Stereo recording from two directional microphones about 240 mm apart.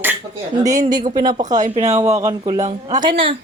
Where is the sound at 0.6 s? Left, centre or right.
Right.